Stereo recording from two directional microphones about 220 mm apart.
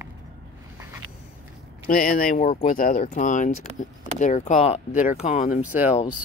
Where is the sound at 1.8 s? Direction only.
40° left (ahead or behind).